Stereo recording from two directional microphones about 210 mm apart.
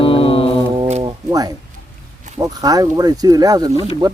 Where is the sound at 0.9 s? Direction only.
20° right (ahead or behind).